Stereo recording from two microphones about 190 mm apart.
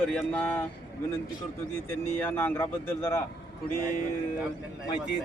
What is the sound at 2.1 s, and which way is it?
Speech, 10° left (ahead or behind).